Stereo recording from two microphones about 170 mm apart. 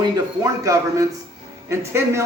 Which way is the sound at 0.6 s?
20° right (ahead or behind).